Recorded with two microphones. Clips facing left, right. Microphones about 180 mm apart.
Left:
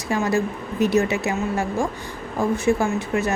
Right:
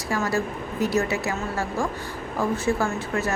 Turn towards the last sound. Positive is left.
turn(degrees=15)  # may be behind; listen again after turning